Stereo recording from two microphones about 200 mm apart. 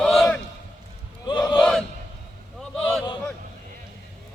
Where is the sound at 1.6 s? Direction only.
Centre (ahead or behind).